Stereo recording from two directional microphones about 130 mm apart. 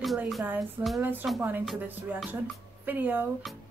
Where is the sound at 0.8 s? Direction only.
25° right (ahead or behind).